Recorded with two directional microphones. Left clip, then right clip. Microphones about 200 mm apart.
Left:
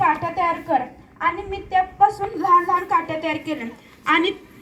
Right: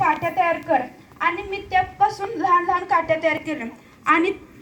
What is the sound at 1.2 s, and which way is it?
A woman's voice, 10° right (ahead or behind).